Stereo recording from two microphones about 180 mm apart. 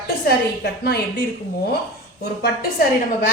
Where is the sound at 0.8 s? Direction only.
65° left (ahead or behind).